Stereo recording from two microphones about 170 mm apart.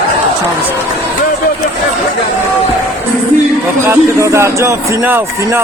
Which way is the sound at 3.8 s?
15° right (ahead or behind).